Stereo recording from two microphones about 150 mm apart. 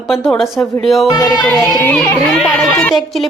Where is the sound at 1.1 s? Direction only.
25° left (ahead or behind).